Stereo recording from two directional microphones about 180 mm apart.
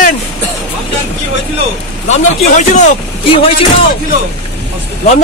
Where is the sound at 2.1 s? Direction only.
40° left (ahead or behind).